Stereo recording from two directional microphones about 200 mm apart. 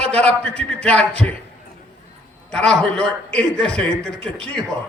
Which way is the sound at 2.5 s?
5° left (ahead or behind).